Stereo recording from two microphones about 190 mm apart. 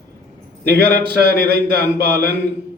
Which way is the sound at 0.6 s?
60° right (ahead or behind).